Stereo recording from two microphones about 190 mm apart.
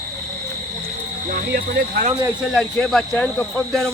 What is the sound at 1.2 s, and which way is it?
Speech, 45° right (ahead or behind).